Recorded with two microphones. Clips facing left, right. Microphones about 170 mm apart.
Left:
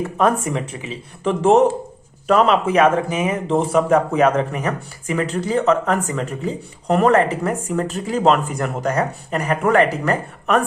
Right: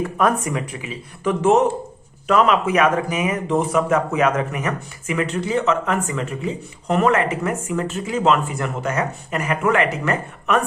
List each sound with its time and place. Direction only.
0.2 s speech: 30° left (ahead or behind)